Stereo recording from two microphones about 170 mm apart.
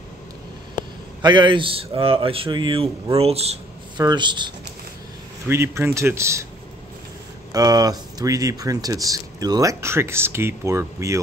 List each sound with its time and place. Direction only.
1.2 s speech: 30° right (ahead or behind)
4.0 s speech: 25° right (ahead or behind)
5.5 s speech: 15° right (ahead or behind)
7.5 s speech: 25° right (ahead or behind)